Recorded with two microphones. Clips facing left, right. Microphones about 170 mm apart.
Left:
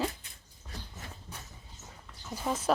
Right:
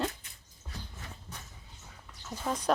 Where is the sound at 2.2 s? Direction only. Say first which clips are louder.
Left 1 dB; 10° left (ahead or behind).